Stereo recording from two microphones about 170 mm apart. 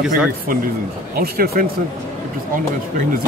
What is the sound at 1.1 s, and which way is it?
Speech, 65° right (ahead or behind).